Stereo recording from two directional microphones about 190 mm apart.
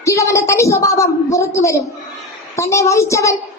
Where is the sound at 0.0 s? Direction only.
15° left (ahead or behind).